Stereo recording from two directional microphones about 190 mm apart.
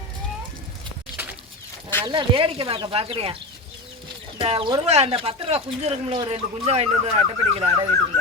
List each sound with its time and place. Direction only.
1.1 s bird: 10° right (ahead or behind)
2.0 s speech: 25° right (ahead or behind)
4.4 s speech: 30° right (ahead or behind)